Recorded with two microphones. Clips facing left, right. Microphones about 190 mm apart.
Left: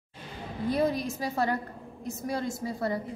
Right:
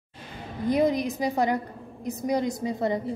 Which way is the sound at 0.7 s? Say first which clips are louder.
Right 4 dB; 15° right (ahead or behind).